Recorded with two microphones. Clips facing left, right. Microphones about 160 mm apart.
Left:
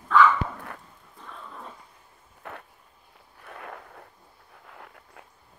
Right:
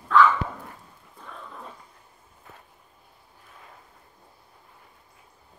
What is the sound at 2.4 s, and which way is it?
Vehicle, 75° left (ahead or behind).